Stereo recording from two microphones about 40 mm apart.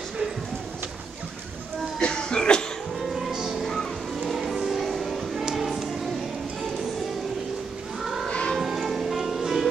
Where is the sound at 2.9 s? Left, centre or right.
Centre.